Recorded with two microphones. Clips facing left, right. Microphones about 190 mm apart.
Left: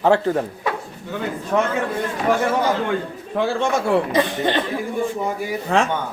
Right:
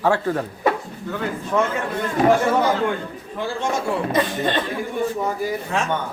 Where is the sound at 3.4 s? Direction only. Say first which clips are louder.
Left 6 dB; 85° left.